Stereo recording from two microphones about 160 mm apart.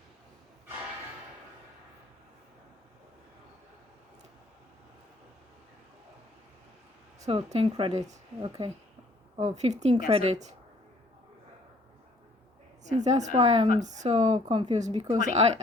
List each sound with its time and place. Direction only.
7.2 s speech: 40° right (ahead or behind)
12.8 s speech: 45° right (ahead or behind)